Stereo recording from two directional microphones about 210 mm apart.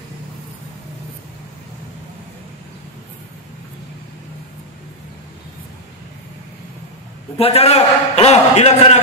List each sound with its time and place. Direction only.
7.3 s a man's voice: 30° left (ahead or behind)